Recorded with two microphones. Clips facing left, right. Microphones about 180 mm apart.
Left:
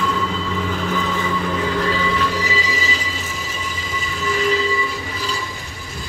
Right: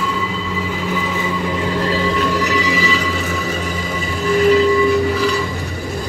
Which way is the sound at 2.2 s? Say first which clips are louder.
Right 5 dB; 65° right (ahead or behind).